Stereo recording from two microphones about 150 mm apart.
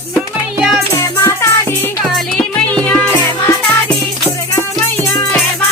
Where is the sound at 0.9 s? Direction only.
20° left (ahead or behind).